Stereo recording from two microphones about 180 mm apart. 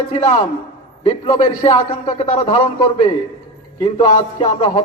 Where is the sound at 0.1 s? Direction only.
35° left (ahead or behind).